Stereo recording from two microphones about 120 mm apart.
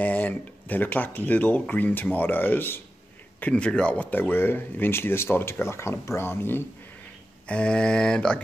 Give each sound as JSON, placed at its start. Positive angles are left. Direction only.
{"t": 0.0, "sound": "speech", "side_deg": 15}